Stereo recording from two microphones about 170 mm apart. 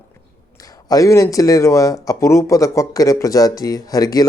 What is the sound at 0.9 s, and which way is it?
Speech, 20° left (ahead or behind).